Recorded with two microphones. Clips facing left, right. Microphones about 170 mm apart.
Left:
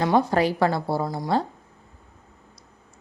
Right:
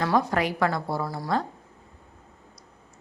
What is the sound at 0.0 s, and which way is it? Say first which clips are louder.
A woman's voice: left 4 dB; 30° left (ahead or behind).